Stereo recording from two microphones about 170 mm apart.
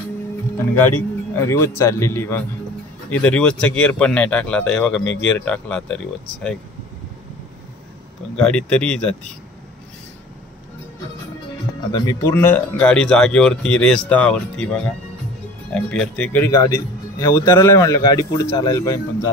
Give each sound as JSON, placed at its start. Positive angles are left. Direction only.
{"t": 1.3, "sound": "speech", "side_deg": 15}
{"t": 8.4, "sound": "speech", "side_deg": 5}
{"t": 11.9, "sound": "speech", "side_deg": 20}
{"t": 16.4, "sound": "a man's voice", "side_deg": 15}